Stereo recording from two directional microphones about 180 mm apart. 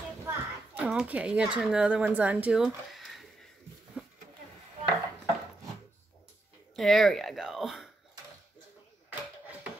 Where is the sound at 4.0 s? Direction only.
5° right (ahead or behind).